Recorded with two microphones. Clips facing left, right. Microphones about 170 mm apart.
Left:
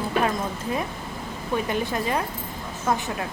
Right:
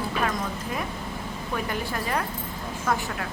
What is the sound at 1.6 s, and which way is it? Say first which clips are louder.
Speech: left 4 dB; 20° left (ahead or behind).